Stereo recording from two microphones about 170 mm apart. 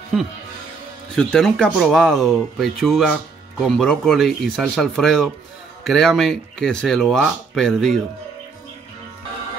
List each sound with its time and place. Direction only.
1.1 s speech: 5° left (ahead or behind)